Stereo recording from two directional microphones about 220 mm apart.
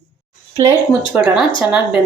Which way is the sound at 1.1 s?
5° right (ahead or behind).